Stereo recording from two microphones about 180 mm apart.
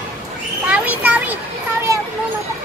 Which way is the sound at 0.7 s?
10° right (ahead or behind).